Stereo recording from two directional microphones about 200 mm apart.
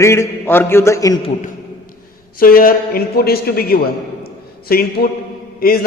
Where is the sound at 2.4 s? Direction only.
45° left (ahead or behind).